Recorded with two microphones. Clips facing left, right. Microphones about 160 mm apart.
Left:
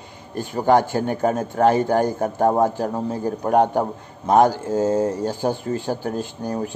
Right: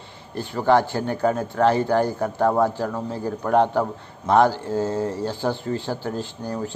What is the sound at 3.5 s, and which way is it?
Speech, 45° left (ahead or behind).